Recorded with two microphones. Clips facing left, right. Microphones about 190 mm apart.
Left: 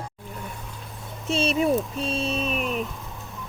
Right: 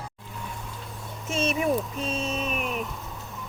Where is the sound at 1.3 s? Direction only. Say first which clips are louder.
Left 3 dB; 35° left (ahead or behind).